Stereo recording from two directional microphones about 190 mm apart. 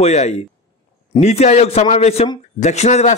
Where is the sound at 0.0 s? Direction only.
35° left (ahead or behind).